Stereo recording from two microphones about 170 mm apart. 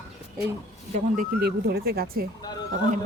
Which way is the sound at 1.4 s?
65° right (ahead or behind).